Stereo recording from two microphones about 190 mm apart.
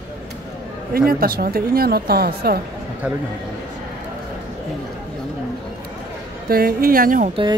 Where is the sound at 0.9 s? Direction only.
50° right (ahead or behind).